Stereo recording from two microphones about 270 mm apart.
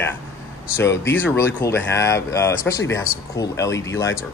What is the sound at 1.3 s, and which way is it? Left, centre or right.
A man's voice, centre.